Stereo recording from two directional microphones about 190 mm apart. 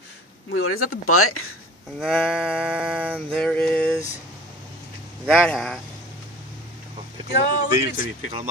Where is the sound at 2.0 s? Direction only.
Centre (ahead or behind).